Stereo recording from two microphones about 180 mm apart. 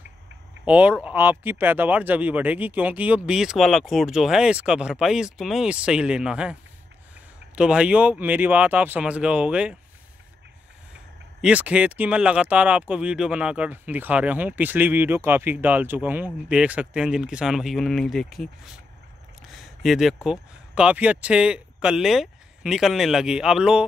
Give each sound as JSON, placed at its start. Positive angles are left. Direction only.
{"t": 0.7, "sound": "speech", "side_deg": -10}
{"t": 7.5, "sound": "speech", "side_deg": -5}
{"t": 11.4, "sound": "speech", "side_deg": -5}
{"t": 19.5, "sound": "a sound", "side_deg": 0}
{"t": 20.2, "sound": "speech", "side_deg": -5}